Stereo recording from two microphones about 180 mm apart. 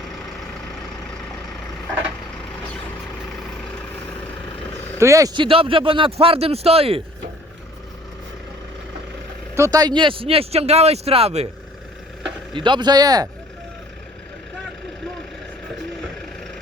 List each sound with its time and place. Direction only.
4.9 s speech: 15° right (ahead or behind); by 7.0 s 30° right (ahead or behind)
9.6 s speech: 20° right (ahead or behind); by 11.4 s 35° right (ahead or behind)
12.5 s speech: 25° right (ahead or behind)